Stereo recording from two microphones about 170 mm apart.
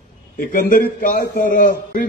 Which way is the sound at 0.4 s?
55° left (ahead or behind).